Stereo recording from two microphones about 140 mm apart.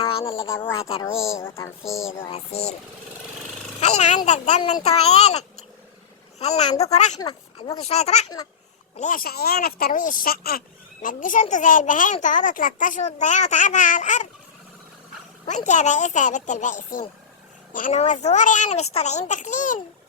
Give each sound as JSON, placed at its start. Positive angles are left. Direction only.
{"t": 0.0, "sound": "a sound", "side_deg": 40}
{"t": 0.6, "sound": "a child's voice", "side_deg": 40}
{"t": 1.4, "sound": "a sound", "side_deg": 20}
{"t": 3.8, "sound": "a child's voice", "side_deg": 50}
{"t": 7.2, "sound": "speech", "side_deg": 30}
{"t": 7.9, "sound": "a child's voice", "side_deg": 50}
{"t": 9.0, "sound": "speech", "side_deg": 80}
{"t": 11.0, "sound": "a child's voice", "side_deg": 70}
{"t": 15.4, "sound": "a child's voice", "side_deg": 60}